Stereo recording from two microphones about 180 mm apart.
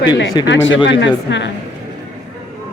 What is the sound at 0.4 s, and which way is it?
Speech, 90° left.